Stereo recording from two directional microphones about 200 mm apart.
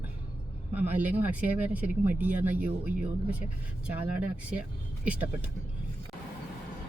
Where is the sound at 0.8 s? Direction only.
10° right (ahead or behind).